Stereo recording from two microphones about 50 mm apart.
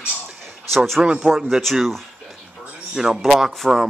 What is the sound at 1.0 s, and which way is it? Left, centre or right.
Speech, centre.